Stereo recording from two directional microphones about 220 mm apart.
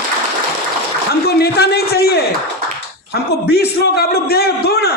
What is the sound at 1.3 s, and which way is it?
Speech, 45° left (ahead or behind).